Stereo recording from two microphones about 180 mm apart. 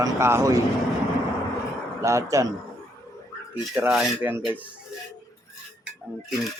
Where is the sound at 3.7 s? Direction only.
5° right (ahead or behind).